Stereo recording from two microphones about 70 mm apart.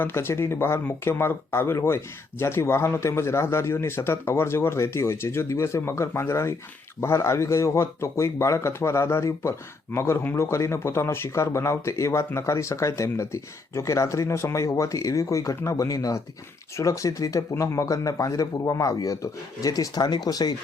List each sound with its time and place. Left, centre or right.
0.0 s a man's voice: left
15.9 s speech: left